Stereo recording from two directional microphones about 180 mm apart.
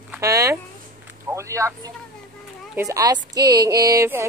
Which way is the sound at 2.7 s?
15° right (ahead or behind).